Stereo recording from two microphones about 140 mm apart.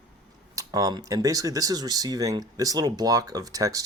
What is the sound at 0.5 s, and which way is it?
Speech, 25° right (ahead or behind).